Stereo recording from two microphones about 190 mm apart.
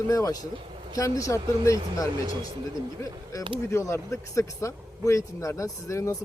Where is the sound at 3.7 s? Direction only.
15° left (ahead or behind).